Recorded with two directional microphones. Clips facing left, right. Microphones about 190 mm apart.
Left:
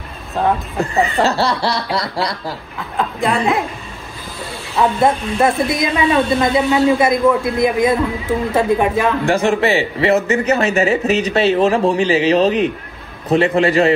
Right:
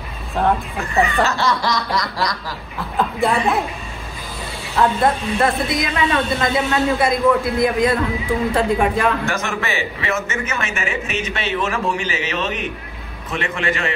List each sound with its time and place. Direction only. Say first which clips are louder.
1.2 s a man's voice: left 3 dB; 35° left (ahead or behind)
3.0 s speech: left 1 dB; centre (ahead or behind)
4.7 s speech: left 2 dB; 20° left (ahead or behind)
9.2 s a man's voice: left 9 dB; 30° left (ahead or behind)